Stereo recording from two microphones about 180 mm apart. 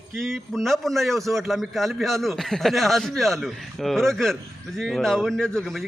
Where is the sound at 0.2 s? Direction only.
Centre (ahead or behind).